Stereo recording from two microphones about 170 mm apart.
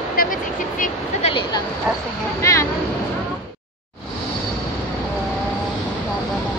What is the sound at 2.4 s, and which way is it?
Speech, 20° left (ahead or behind).